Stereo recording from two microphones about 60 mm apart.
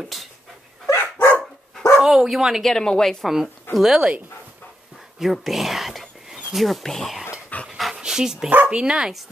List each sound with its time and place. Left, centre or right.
0.9 s dog: left
2.0 s speech: centre
2.6 s speech: centre
3.7 s speech: centre
5.2 s speech: centre
7.6 s dog: centre
7.9 s dog: centre
8.6 s speech: centre